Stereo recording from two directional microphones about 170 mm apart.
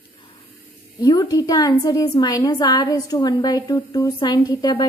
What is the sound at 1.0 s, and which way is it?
A woman's voice, 20° left (ahead or behind).